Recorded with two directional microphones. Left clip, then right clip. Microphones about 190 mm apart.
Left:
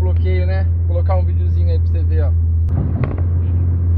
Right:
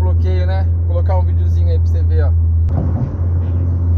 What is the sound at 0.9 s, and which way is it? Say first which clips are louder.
Speech: right 1 dB; 10° right (ahead or behind).